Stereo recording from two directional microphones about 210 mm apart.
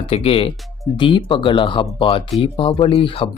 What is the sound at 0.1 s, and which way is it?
Speech, 30° left (ahead or behind).